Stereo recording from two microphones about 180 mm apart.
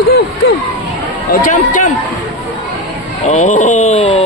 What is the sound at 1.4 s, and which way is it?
Speech, 45° left (ahead or behind).